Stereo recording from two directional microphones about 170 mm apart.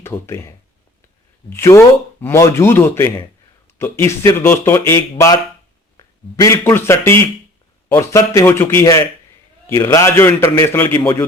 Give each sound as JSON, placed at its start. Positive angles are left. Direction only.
{"t": 0.0, "sound": "a man's voice", "side_deg": 15}